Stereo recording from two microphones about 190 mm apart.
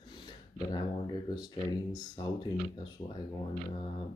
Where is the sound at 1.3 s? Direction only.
20° left (ahead or behind).